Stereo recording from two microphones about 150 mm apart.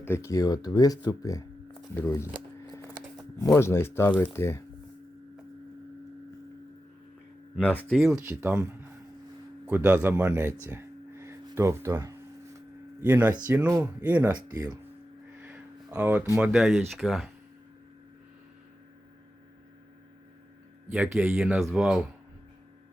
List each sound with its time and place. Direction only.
0.0 s speech: 15° left (ahead or behind)
3.4 s speech: 20° left (ahead or behind)
7.6 s speech: 10° left (ahead or behind)
7.9 s speech: centre (ahead or behind)
8.2 s speech: 15° right (ahead or behind)
15.4 s a sound: 10° right (ahead or behind)
16.3 s speech: 5° right (ahead or behind)
20.9 s speech: 5° right (ahead or behind)